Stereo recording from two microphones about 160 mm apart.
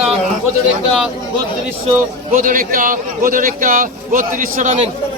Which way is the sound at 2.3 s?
60° right (ahead or behind).